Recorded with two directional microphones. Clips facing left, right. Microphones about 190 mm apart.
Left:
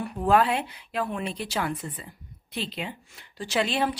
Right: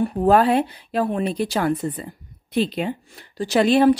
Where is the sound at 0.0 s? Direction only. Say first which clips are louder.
Right 6 dB; 40° right (ahead or behind).